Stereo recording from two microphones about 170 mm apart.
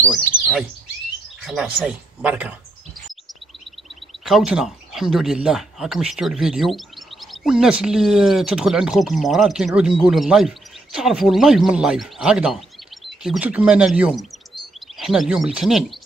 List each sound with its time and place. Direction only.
1.4 s speech: centre (ahead or behind)
4.2 s speech: centre (ahead or behind)